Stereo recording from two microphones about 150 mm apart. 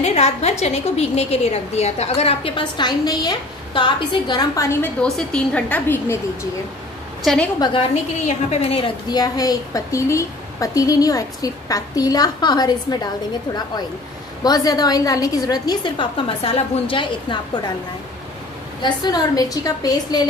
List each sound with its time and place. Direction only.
0.0 s a woman's voice: 45° left (ahead or behind); by 4.7 s 25° left (ahead or behind)
5.0 s a woman's voice: 5° left (ahead or behind)
8.5 s a woman's voice: 40° left (ahead or behind)
9.1 s a woman's voice: 25° left (ahead or behind)
14.4 s a woman's voice: 25° left (ahead or behind)
18.8 s a woman's voice: 30° left (ahead or behind)